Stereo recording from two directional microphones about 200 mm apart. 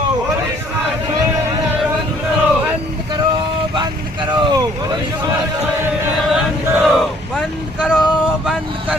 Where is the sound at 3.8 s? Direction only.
20° right (ahead or behind).